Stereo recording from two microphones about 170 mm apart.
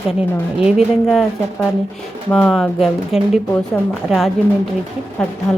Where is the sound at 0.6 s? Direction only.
5° right (ahead or behind).